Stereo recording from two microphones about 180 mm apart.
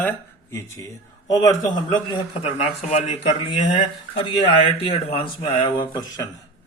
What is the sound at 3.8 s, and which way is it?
Speech, 35° left (ahead or behind).